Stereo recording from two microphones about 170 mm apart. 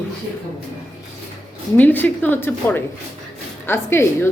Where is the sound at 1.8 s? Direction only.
10° left (ahead or behind).